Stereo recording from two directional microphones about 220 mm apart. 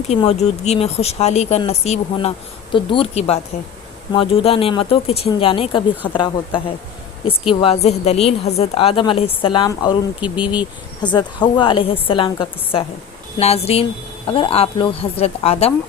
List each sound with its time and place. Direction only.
0.1 s a woman's voice: 30° left (ahead or behind)
7.6 s a woman's voice: 30° left (ahead or behind)
10.2 s speech: 5° right (ahead or behind)
11.0 s a woman's voice: 20° left (ahead or behind)